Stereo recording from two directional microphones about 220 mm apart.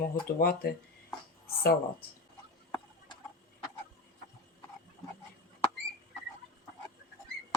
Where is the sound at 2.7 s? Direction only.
15° left (ahead or behind).